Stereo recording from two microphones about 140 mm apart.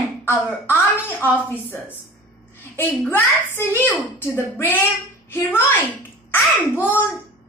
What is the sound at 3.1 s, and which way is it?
A child's voice, 15° left (ahead or behind).